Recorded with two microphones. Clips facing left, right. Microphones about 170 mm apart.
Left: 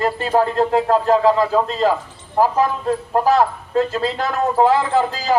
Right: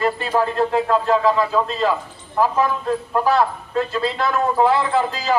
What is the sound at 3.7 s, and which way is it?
Speech, 40° left (ahead or behind).